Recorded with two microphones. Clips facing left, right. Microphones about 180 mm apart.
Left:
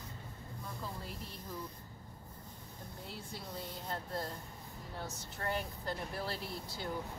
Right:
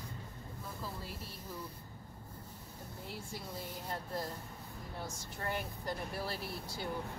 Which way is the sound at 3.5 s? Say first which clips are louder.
Left 1 dB; 10° right (ahead or behind).